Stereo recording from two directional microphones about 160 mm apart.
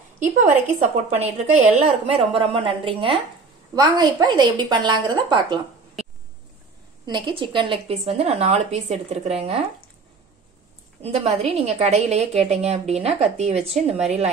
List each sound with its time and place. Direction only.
0.2 s a woman's voice: 50° right (ahead or behind); by 5.6 s 30° right (ahead or behind)
7.1 s a woman's voice: 30° right (ahead or behind)
11.0 s a woman's voice: 40° right (ahead or behind)